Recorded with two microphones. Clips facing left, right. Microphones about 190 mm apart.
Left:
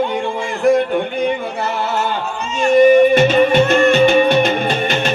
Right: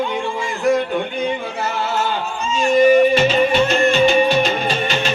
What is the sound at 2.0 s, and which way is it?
Music, 65° left (ahead or behind).